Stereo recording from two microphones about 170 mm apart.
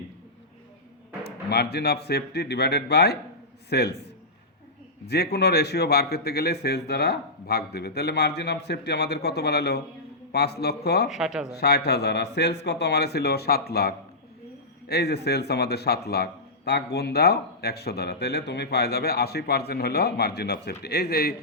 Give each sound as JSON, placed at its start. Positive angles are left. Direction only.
{"t": 1.2, "sound": "a man's voice", "side_deg": 70}
{"t": 11.1, "sound": "speech", "side_deg": -5}
{"t": 11.5, "sound": "a man's voice", "side_deg": 70}